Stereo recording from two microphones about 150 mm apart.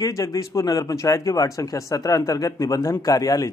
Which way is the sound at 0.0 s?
25° left (ahead or behind).